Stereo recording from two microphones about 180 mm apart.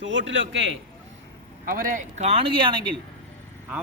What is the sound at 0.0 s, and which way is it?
Speech, 90° right.